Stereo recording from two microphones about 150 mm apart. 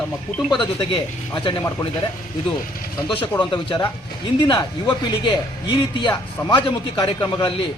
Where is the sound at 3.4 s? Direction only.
35° left (ahead or behind).